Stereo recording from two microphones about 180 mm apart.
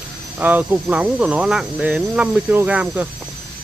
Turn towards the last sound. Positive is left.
turn(degrees=-10)  # may be behind; listen again after turning